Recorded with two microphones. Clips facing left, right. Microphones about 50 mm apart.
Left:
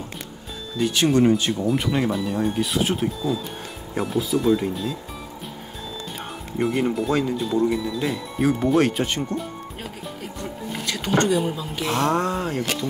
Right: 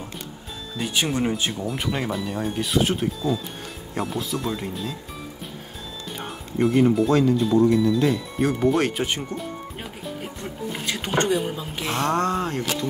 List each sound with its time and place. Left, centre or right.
0.7 s speech: centre
6.6 s speech: centre
9.3 s speech: left
11.5 s speech: right
11.9 s speech: centre